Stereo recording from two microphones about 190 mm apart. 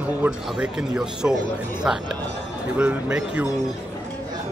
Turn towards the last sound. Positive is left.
turn(degrees=-5)  # may be behind; listen again after turning